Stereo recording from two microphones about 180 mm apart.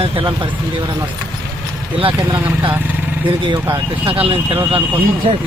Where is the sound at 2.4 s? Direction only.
10° right (ahead or behind).